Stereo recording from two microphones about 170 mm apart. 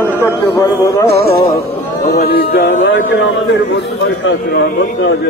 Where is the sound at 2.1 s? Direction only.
65° left (ahead or behind); by 3.0 s 90° left.